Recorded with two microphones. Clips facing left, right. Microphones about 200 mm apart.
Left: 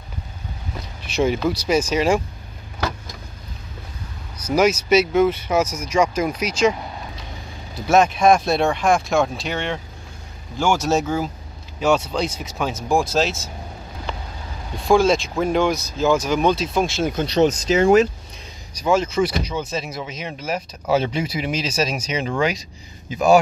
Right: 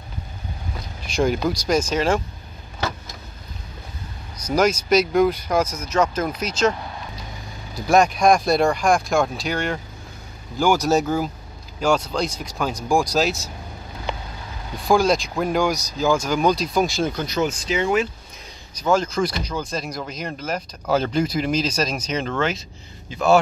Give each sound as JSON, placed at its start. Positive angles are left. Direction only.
{"t": 1.1, "sound": "speech", "side_deg": 5}
{"t": 4.5, "sound": "speech", "side_deg": 5}
{"t": 14.9, "sound": "speech", "side_deg": 0}
{"t": 17.1, "sound": "speech", "side_deg": 25}
{"t": 17.4, "sound": "speech", "side_deg": 40}
{"t": 18.8, "sound": "speech", "side_deg": 5}